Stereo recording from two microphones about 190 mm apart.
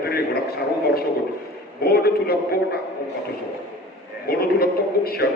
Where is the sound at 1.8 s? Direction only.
55° left (ahead or behind).